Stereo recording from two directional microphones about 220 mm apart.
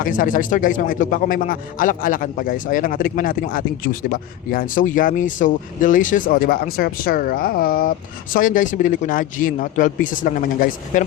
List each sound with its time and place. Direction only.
0.0 s a man's voice: 40° left (ahead or behind)